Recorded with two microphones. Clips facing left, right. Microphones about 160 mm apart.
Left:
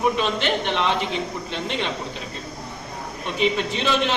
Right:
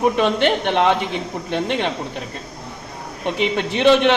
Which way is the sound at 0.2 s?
55° right (ahead or behind).